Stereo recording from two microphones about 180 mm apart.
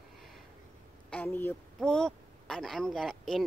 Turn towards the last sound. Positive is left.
turn(degrees=5)  # may be behind; listen again after turning